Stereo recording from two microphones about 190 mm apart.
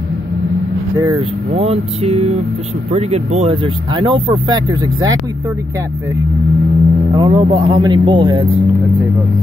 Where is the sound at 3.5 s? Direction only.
25° right (ahead or behind).